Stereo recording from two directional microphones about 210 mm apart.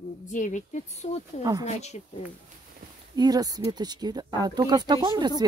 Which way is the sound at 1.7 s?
30° left (ahead or behind).